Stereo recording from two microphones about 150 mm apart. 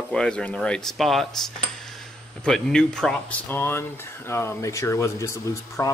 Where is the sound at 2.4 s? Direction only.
5° left (ahead or behind).